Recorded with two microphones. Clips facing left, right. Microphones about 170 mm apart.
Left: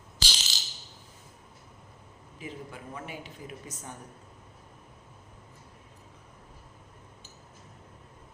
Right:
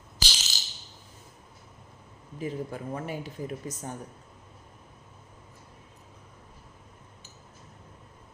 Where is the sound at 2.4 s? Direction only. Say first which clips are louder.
Right 8 dB; 40° right (ahead or behind).